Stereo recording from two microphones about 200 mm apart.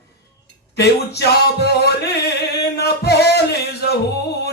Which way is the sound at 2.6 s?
55° left (ahead or behind).